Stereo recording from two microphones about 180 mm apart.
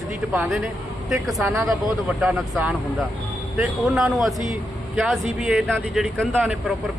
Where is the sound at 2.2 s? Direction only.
5° right (ahead or behind).